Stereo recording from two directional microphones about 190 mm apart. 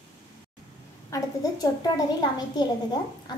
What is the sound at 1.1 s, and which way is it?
Speech, 20° left (ahead or behind).